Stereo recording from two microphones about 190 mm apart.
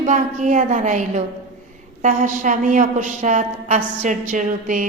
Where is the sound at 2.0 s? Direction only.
45° right (ahead or behind).